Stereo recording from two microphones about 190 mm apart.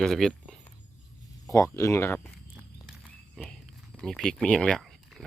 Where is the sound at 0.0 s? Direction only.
Centre (ahead or behind).